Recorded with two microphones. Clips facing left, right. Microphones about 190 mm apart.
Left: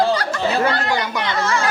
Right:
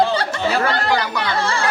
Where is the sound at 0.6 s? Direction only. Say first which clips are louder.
Even; 20° left (ahead or behind).